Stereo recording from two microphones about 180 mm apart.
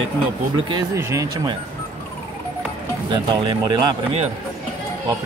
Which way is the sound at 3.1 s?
25° right (ahead or behind).